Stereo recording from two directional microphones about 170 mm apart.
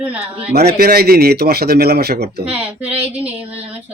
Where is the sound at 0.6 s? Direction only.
65° right (ahead or behind).